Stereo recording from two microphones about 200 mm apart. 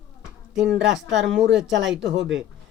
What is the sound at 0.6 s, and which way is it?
Speech, 65° right (ahead or behind).